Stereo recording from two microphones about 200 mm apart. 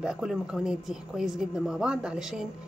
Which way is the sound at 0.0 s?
5° right (ahead or behind).